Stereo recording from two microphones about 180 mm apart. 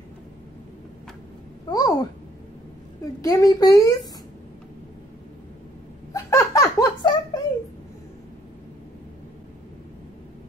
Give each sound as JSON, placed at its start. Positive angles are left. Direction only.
{"t": 1.7, "sound": "a sound", "side_deg": 20}
{"t": 3.2, "sound": "speech", "side_deg": 20}
{"t": 6.1, "sound": "giggle", "side_deg": 15}